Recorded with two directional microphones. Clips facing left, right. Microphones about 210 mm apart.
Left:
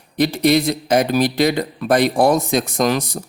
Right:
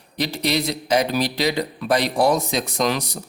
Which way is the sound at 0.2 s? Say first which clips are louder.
Left 7 dB; 50° left (ahead or behind).